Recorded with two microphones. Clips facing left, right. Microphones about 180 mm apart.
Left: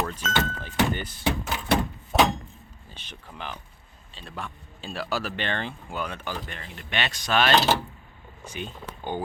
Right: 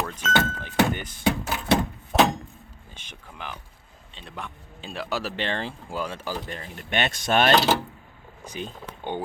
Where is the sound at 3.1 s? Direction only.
10° right (ahead or behind).